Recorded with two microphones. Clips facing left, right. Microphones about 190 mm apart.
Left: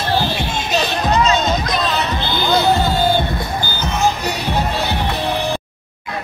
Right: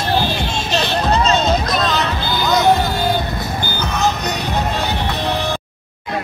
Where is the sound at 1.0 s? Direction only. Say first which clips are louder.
Even; 30° right (ahead or behind).